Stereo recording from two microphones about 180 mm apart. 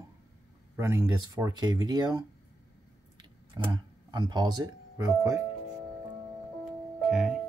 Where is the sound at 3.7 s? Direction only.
25° right (ahead or behind).